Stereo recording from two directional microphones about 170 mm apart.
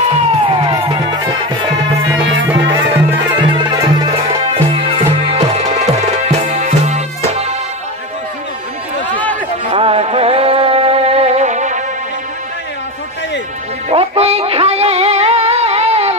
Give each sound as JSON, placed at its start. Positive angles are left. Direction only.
{"t": 0.5, "sound": "music", "side_deg": -30}
{"t": 2.5, "sound": "music", "side_deg": -10}
{"t": 3.3, "sound": "music", "side_deg": -25}
{"t": 9.1, "sound": "run", "side_deg": 10}
{"t": 9.7, "sound": "music", "side_deg": -35}
{"t": 13.8, "sound": "music", "side_deg": -35}